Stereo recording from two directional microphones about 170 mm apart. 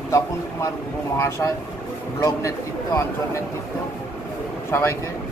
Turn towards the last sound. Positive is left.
turn(degrees=15)  # may be behind; listen again after turning